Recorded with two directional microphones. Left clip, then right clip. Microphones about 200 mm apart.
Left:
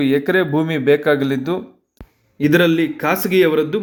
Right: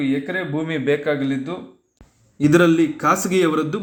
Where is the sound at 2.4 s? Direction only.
10° left (ahead or behind).